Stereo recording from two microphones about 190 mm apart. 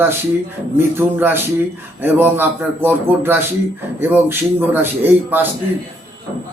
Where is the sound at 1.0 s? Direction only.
10° right (ahead or behind).